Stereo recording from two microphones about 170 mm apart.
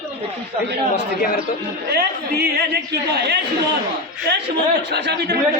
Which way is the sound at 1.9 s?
70° right (ahead or behind).